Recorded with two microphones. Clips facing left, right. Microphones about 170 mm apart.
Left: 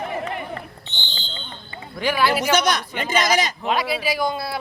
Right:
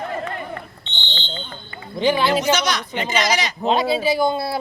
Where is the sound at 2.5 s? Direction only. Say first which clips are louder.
Left 2 dB; 50° left (ahead or behind).